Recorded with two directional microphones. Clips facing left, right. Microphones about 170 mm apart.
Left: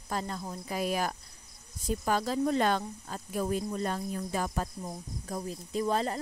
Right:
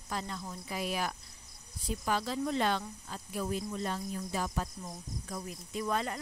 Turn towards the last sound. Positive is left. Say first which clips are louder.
# left 4 dB
turn(degrees=35)  # may be behind; listen again after turning